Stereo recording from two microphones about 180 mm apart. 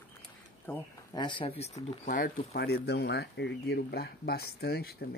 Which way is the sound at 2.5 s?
65° left (ahead or behind).